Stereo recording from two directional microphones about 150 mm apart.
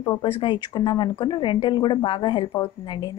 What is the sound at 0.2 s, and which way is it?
A woman's voice, 35° left (ahead or behind).